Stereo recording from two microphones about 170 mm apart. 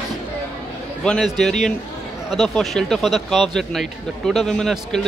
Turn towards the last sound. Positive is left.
turn(degrees=0)  # may be behind; listen again after turning